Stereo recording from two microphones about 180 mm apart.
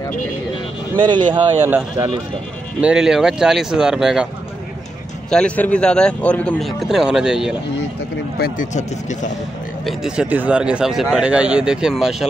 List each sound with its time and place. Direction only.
0.9 s speech: 25° right (ahead or behind)
1.6 s speech: 10° right (ahead or behind)
5.3 s speech: 5° left (ahead or behind)
8.4 s speech: 50° left (ahead or behind)
9.8 s speech: 5° right (ahead or behind)